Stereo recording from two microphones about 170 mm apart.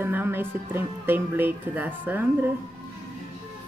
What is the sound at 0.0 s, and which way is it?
A woman's voice, 10° right (ahead or behind).